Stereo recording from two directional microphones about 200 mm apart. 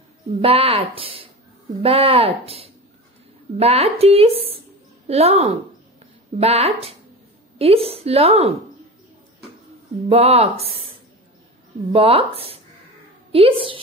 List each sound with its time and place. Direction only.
0.3 s a woman's voice: 30° right (ahead or behind)
10.0 s speech: 30° right (ahead or behind)
11.9 s speech: 30° right (ahead or behind)